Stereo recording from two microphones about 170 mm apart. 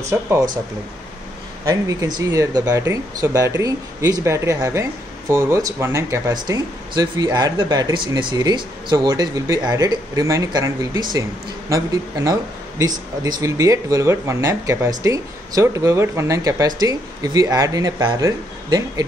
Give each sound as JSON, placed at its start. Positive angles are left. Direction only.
{"t": 0.0, "sound": "speech", "side_deg": -15}
{"t": 1.7, "sound": "speech", "side_deg": -20}